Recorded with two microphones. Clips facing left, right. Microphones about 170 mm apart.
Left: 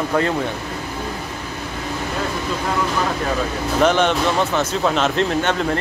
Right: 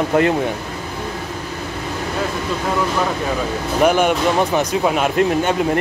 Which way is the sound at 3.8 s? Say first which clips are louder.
Right 2 dB; 10° right (ahead or behind).